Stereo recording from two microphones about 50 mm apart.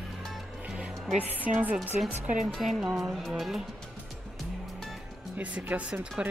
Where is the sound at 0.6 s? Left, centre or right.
Right.